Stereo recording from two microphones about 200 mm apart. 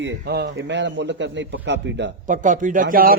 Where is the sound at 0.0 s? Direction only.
60° right (ahead or behind).